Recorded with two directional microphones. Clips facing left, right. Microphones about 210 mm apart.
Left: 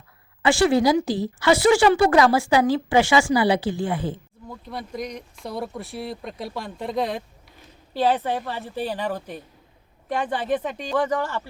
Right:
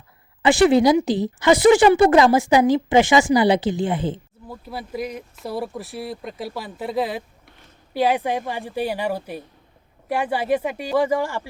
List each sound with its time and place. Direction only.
0.4 s a woman's voice: 20° right (ahead or behind)
4.4 s a woman's voice: 5° right (ahead or behind)